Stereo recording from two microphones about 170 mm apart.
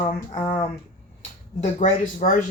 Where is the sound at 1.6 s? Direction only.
50° left (ahead or behind).